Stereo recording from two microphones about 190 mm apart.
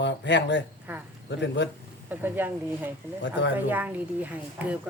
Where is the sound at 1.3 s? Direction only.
70° left (ahead or behind).